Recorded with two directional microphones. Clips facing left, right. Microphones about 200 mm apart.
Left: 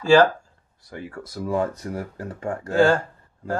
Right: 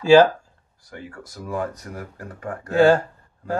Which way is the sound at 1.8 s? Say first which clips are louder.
Left 5 dB; 30° left (ahead or behind).